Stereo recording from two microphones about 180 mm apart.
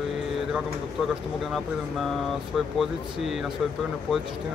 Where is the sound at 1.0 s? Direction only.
Centre (ahead or behind).